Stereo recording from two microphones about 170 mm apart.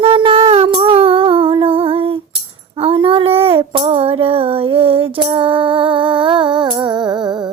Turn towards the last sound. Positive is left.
turn(degrees=-25)  # may be behind; listen again after turning